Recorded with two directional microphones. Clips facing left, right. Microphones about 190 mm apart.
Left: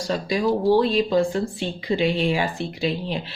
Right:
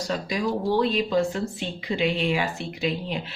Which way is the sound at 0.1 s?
30° left (ahead or behind).